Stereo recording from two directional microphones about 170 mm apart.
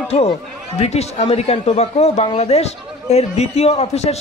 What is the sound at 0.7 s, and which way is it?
Speech, 40° left (ahead or behind).